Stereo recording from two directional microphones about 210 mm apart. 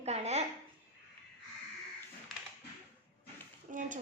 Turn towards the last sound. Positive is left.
turn(degrees=-35)  # may be behind; listen again after turning